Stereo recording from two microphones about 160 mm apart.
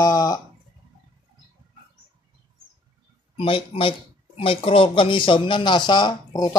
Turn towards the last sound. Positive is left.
turn(degrees=25)  # may be behind; listen again after turning